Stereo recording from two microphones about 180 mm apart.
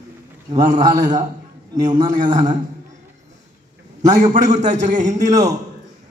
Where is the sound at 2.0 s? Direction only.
45° right (ahead or behind).